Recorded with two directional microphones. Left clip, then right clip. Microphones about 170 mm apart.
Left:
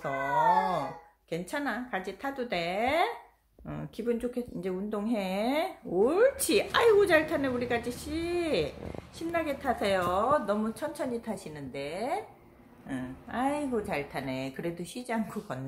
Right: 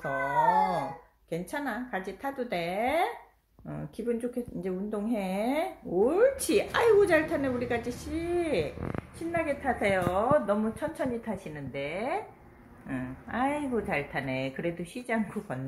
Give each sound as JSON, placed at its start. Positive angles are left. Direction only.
{"t": 0.0, "sound": "a sound", "side_deg": 10}
{"t": 1.3, "sound": "speech", "side_deg": 10}
{"t": 8.1, "sound": "a woman's voice", "side_deg": 15}